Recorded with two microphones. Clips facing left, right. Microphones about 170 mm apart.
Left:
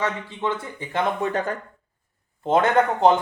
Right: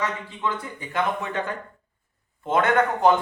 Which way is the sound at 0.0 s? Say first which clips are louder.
Left 2 dB; 25° left (ahead or behind).